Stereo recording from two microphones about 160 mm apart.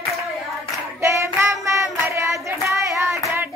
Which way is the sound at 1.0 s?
15° right (ahead or behind).